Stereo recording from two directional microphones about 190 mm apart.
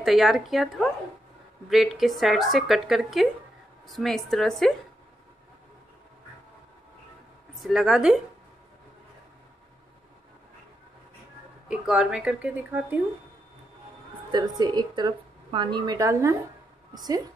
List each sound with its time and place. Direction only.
0.0 s speech: centre (ahead or behind)
7.5 s speech: centre (ahead or behind)
11.7 s speech: 5° right (ahead or behind)
14.6 s speech: 20° right (ahead or behind)